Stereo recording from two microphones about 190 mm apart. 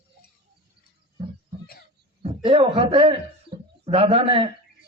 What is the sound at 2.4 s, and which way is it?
Speech, 30° right (ahead or behind).